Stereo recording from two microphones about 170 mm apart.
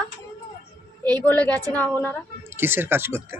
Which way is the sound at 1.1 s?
10° left (ahead or behind).